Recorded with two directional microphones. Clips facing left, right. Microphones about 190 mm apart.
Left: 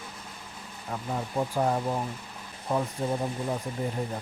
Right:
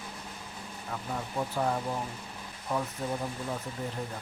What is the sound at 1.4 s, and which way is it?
Speech, 20° left (ahead or behind).